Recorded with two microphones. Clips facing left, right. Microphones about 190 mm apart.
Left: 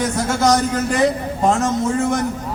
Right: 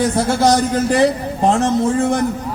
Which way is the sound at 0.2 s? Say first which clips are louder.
Right 1 dB; 30° right (ahead or behind).